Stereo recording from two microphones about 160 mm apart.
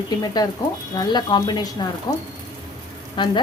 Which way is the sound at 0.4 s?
25° left (ahead or behind).